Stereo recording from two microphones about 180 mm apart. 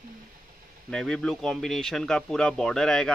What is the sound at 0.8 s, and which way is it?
Speech, 5° left (ahead or behind).